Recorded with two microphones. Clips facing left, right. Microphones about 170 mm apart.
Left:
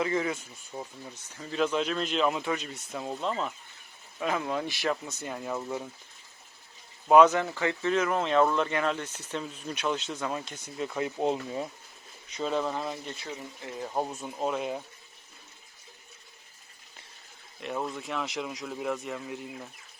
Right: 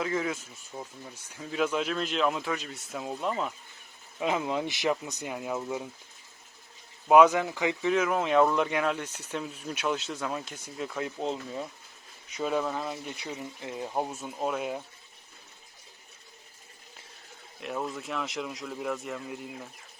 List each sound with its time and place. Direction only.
0.0 s speech: centre (ahead or behind)
1.1 s speech: 10° right (ahead or behind)
7.1 s speech: 10° right (ahead or behind)
12.4 s speech: 5° right (ahead or behind)
13.1 s speech: 20° right (ahead or behind)
13.9 s speech: 5° right (ahead or behind)
17.6 s speech: centre (ahead or behind)